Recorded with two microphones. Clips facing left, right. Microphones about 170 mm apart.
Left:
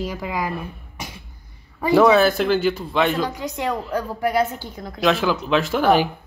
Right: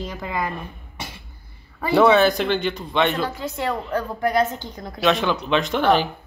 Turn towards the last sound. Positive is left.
turn(degrees=10)  # may be behind; listen again after turning